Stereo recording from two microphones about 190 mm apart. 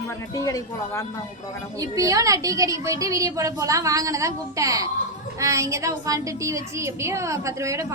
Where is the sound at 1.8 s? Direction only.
15° right (ahead or behind).